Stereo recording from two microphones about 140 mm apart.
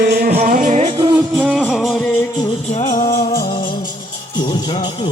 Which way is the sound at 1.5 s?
Centre (ahead or behind).